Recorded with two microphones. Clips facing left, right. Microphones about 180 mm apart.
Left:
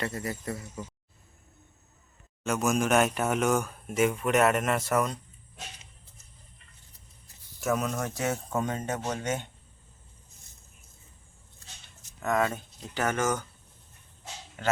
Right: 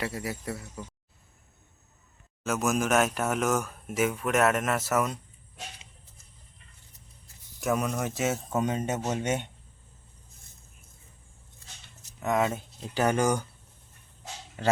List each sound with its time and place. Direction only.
0.0 s speech: 10° right (ahead or behind)
2.4 s speech: centre (ahead or behind)
7.7 s speech: 5° right (ahead or behind)
8.7 s a man's voice: 15° right (ahead or behind)
12.2 s speech: 20° right (ahead or behind)